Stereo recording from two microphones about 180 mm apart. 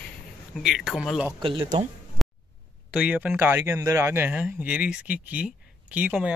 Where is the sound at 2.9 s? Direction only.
5° right (ahead or behind).